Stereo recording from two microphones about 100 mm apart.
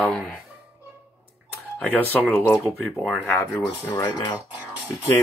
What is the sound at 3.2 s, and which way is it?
Speech, 25° left (ahead or behind).